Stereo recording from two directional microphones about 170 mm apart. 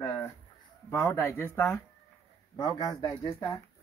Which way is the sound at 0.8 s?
15° left (ahead or behind).